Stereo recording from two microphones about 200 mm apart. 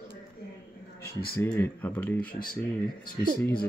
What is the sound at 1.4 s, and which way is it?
Speech, 10° left (ahead or behind).